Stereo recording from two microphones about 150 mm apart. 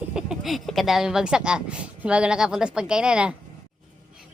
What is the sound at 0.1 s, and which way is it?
Speech, 5° right (ahead or behind).